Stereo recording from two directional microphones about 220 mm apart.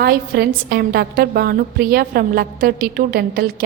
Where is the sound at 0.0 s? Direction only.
45° right (ahead or behind).